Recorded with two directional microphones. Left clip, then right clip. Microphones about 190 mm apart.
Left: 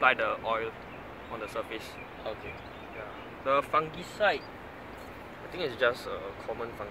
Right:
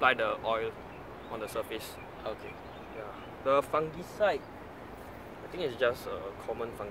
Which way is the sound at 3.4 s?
55° right (ahead or behind).